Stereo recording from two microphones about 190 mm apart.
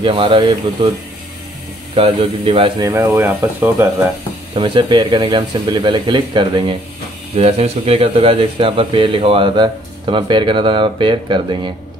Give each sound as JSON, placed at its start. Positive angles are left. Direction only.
{"t": 0.0, "sound": "speech", "side_deg": -25}
{"t": 2.0, "sound": "speech", "side_deg": -30}
{"t": 2.9, "sound": "speech", "side_deg": -15}
{"t": 4.6, "sound": "speech", "side_deg": -25}